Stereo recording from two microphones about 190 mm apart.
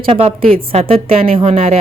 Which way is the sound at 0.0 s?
30° right (ahead or behind).